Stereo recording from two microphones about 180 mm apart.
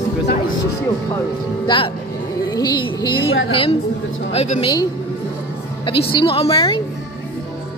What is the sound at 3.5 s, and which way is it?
A woman's voice, 30° left (ahead or behind).